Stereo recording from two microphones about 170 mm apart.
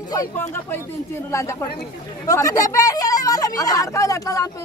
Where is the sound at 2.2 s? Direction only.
20° left (ahead or behind).